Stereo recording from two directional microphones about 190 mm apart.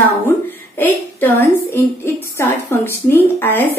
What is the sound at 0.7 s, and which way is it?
A woman's voice, 10° left (ahead or behind).